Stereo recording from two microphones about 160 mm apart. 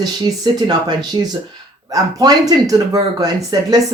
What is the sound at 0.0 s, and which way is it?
Speech, 25° right (ahead or behind).